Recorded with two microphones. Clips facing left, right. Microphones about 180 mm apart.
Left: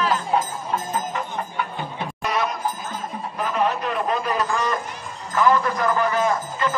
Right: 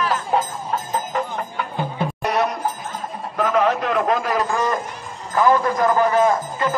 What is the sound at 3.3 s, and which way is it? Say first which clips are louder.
A man's voice: right 5 dB; 90° right.